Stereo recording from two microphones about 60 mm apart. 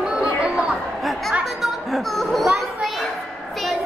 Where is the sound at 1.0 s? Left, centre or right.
Centre.